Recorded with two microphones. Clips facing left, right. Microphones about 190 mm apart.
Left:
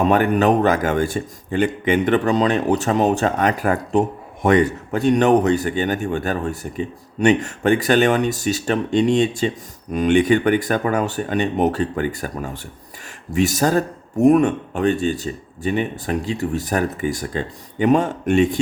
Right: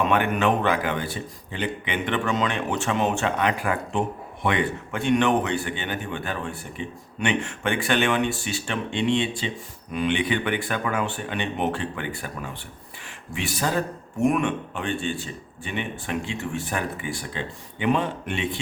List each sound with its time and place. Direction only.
0.0 s speech: 40° left (ahead or behind)